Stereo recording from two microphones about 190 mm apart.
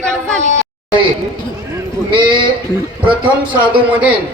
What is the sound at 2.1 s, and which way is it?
Sheep, 25° right (ahead or behind).